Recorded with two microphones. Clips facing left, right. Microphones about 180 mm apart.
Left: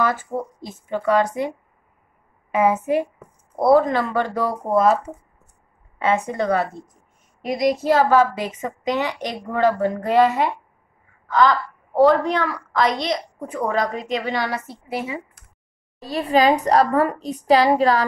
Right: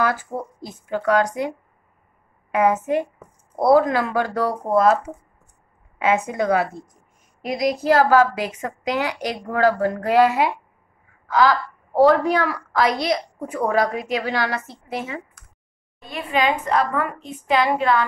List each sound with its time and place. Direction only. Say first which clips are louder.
0.0 s a woman's voice: left 1 dB; centre (ahead or behind)
2.5 s a woman's voice: even; 5° left (ahead or behind)
3.5 s a woman's voice: even; 5° right (ahead or behind)
16.0 s a woman's voice: left 5 dB; 35° left (ahead or behind)